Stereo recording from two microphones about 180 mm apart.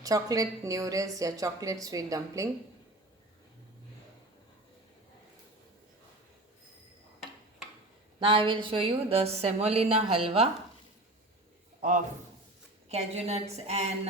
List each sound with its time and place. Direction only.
0.0 s a woman's voice: 20° right (ahead or behind)
8.2 s a woman's voice: 30° right (ahead or behind)
11.8 s a man's voice: 45° right (ahead or behind)